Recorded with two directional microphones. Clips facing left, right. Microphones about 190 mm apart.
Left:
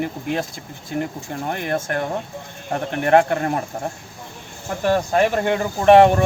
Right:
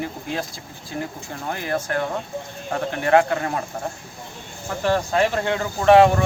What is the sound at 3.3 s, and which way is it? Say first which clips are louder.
Speech: left 3 dB; 50° left (ahead or behind).